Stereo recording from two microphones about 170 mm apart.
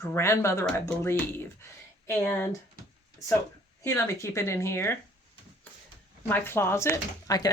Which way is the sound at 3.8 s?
15° left (ahead or behind).